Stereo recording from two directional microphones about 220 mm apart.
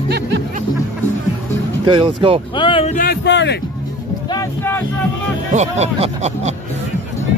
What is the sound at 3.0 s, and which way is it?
Speech, 50° left (ahead or behind).